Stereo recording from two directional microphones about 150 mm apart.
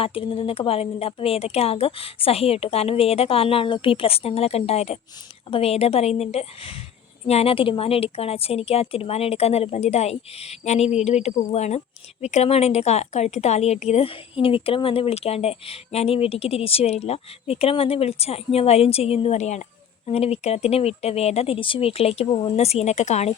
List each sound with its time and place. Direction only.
0.0 s a woman's voice: 35° left (ahead or behind)